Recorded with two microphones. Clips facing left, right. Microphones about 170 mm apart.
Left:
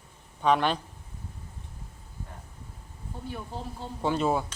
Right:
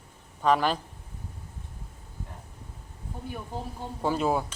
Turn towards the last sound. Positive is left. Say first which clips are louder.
# even
turn(degrees=-5)  # may be behind; listen again after turning